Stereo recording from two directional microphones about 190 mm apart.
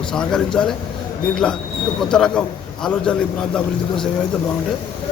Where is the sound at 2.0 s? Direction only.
5° left (ahead or behind).